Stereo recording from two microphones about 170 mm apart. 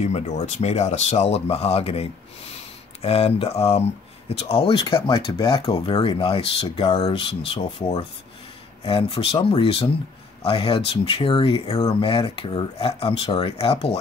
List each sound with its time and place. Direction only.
0.0 s speech: 40° left (ahead or behind)